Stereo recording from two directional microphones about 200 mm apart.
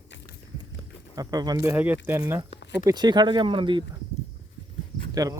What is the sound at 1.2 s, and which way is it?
Speech, 20° right (ahead or behind).